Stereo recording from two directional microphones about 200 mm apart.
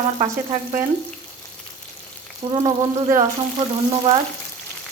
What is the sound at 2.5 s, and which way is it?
Speech, 15° right (ahead or behind).